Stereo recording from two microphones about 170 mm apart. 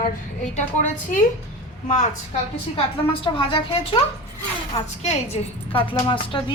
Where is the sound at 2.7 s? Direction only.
30° left (ahead or behind).